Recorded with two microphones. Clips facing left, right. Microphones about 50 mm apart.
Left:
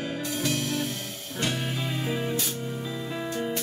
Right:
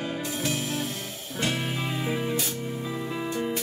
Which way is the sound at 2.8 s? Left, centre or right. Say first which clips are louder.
Right 2 dB; right.